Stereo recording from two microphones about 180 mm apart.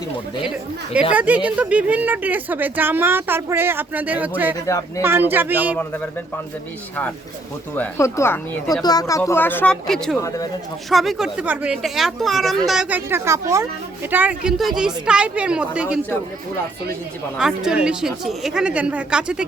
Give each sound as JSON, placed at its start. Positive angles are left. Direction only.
{"t": 0.4, "sound": "a woman's voice", "side_deg": -5}
{"t": 4.6, "sound": "speech", "side_deg": 15}
{"t": 5.0, "sound": "a woman's voice", "side_deg": -10}
{"t": 5.7, "sound": "speech", "side_deg": 5}
{"t": 7.8, "sound": "speech", "side_deg": 15}
{"t": 10.2, "sound": "speech", "side_deg": 15}
{"t": 10.8, "sound": "speech", "side_deg": 0}
{"t": 17.3, "sound": "speech", "side_deg": -5}